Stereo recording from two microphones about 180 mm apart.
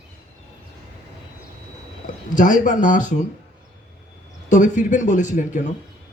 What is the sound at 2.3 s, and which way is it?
Speech, 45° left (ahead or behind).